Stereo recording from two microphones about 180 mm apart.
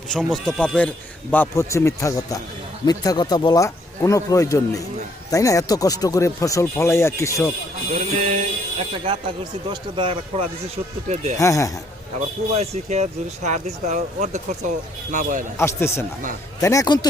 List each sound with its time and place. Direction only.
0.1 s a man's voice: centre (ahead or behind)
7.9 s speech: 40° right (ahead or behind)
11.1 s speech: 40° right (ahead or behind)
11.3 s a man's voice: 20° left (ahead or behind)
12.5 s a man's voice: 40° right (ahead or behind)
15.5 s a man's voice: 15° left (ahead or behind)